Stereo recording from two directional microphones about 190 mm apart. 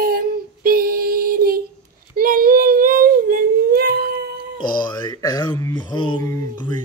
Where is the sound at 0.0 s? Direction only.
50° right (ahead or behind).